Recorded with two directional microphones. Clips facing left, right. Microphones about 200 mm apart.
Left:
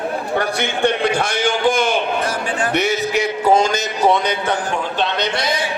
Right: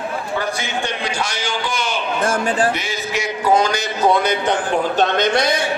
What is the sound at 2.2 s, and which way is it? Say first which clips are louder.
Speech: right 3 dB; 50° right (ahead or behind).